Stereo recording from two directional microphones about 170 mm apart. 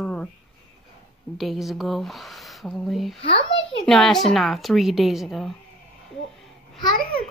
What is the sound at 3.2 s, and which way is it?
Speech, 30° left (ahead or behind).